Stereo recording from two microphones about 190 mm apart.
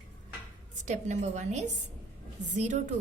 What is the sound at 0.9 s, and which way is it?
Speech, 40° right (ahead or behind).